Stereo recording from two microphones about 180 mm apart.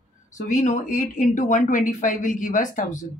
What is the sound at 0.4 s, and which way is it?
Speech, 45° left (ahead or behind).